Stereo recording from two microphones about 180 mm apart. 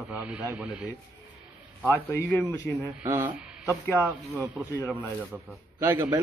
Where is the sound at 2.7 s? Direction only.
5° left (ahead or behind).